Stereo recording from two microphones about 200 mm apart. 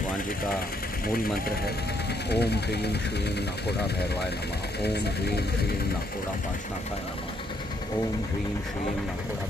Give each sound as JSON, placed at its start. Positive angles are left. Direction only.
{"t": 1.0, "sound": "speech", "side_deg": 45}
{"t": 4.8, "sound": "speech", "side_deg": 55}